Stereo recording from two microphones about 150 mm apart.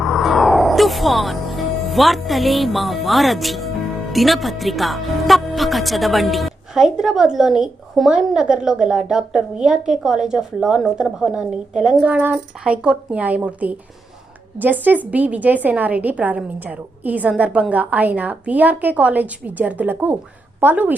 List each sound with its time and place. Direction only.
0.0 s a woman's voice: centre (ahead or behind)